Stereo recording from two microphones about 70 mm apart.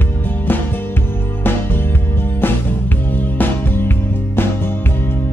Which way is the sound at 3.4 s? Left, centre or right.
Left.